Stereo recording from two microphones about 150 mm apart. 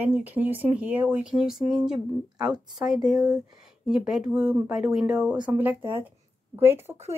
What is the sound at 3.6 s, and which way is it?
Speech, 5° right (ahead or behind).